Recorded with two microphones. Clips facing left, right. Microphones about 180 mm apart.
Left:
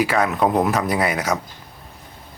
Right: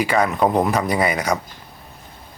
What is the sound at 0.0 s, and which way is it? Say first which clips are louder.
Speech: right 1 dB; centre (ahead or behind).